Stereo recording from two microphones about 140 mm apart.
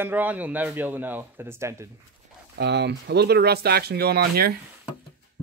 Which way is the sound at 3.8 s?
90° right.